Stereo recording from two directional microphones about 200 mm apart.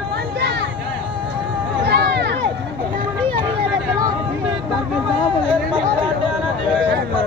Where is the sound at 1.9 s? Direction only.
55° right (ahead or behind).